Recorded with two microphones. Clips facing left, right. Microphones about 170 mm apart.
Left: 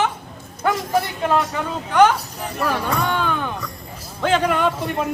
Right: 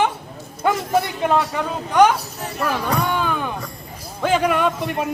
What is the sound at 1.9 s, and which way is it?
Speech, 10° right (ahead or behind).